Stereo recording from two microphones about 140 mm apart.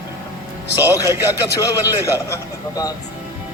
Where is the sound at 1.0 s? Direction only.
25° left (ahead or behind).